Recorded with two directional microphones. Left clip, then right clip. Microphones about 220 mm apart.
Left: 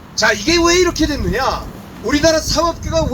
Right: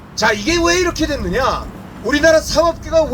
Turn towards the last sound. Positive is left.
turn(degrees=-30)  # may be behind; listen again after turning